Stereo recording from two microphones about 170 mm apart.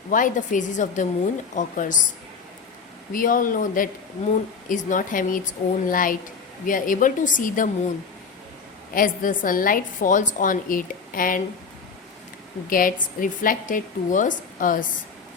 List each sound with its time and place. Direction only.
0.1 s a woman's voice: 50° left (ahead or behind)
3.1 s a woman's voice: 55° left (ahead or behind)
9.0 s a woman's voice: 55° left (ahead or behind)
12.7 s a woman's voice: 55° left (ahead or behind)